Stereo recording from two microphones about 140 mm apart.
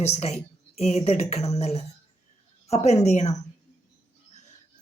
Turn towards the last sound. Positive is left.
turn(degrees=55)  # may be behind; listen again after turning